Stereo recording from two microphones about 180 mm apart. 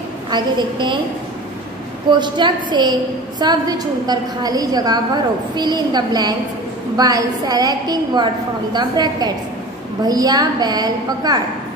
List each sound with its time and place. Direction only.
0.3 s a woman's voice: 25° right (ahead or behind)
2.0 s a woman's voice: 25° right (ahead or behind)